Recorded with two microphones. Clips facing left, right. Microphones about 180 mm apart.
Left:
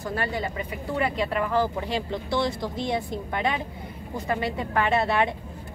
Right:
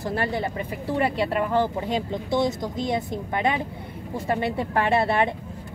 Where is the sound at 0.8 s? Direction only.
30° right (ahead or behind).